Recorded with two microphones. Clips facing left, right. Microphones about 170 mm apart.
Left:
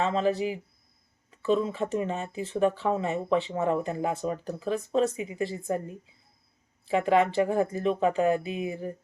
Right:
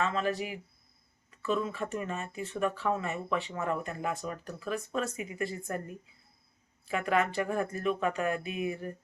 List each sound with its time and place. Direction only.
0.0 s speech: 30° left (ahead or behind)